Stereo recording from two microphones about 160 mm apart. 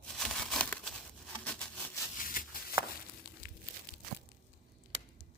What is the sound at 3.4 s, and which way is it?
Crumpling, 60° left (ahead or behind).